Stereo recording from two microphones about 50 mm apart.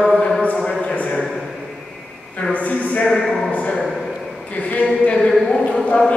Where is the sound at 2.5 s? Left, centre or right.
Left.